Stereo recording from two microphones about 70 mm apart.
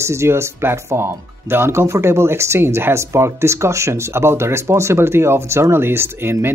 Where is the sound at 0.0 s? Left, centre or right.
Right.